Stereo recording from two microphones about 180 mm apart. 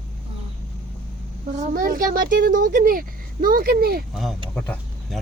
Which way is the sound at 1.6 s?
50° right (ahead or behind).